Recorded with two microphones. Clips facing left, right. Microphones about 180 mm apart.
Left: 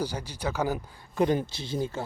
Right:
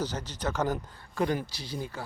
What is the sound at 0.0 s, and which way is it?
Speech, 10° left (ahead or behind).